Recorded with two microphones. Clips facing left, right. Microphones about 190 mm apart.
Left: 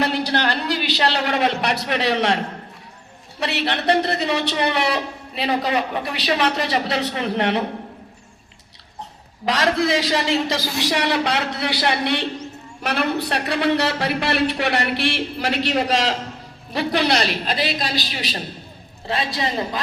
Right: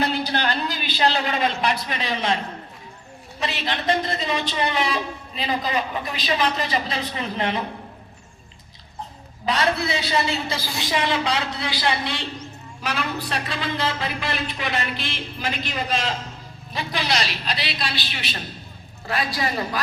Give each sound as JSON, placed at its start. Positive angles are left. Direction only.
{"t": 0.0, "sound": "a man's voice", "side_deg": 70}
{"t": 3.4, "sound": "a man's voice", "side_deg": 65}
{"t": 9.5, "sound": "a man's voice", "side_deg": 90}
{"t": 16.7, "sound": "a woman's voice", "side_deg": 65}
{"t": 19.0, "sound": "a woman's voice", "side_deg": 25}